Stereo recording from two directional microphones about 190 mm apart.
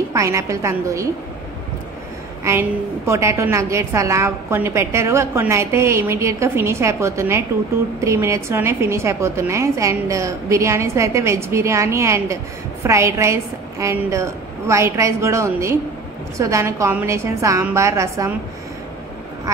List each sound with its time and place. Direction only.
0.1 s a woman's voice: 15° right (ahead or behind)
3.1 s a woman's voice: 15° right (ahead or behind)